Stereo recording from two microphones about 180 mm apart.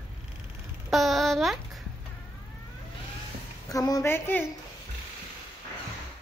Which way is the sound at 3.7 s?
20° left (ahead or behind).